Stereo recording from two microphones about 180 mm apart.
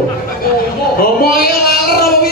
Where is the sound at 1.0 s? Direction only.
55° left (ahead or behind).